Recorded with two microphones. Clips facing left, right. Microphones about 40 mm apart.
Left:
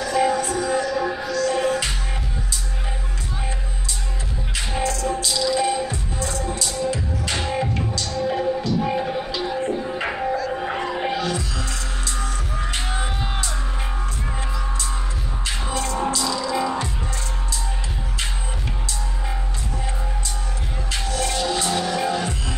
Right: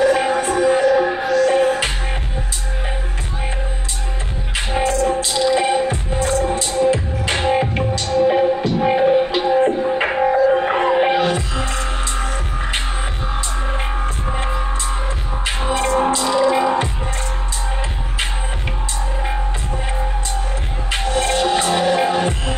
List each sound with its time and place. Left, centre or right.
0.0 s music: right
4.6 s music: right
14.4 s music: right
20.9 s music: right